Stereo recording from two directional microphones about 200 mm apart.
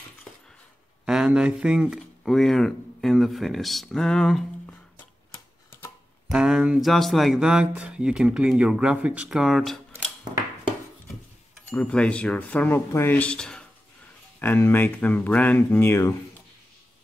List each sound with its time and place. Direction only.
1.0 s speech: 5° right (ahead or behind)
6.3 s speech: 5° right (ahead or behind)
11.7 s speech: 5° left (ahead or behind)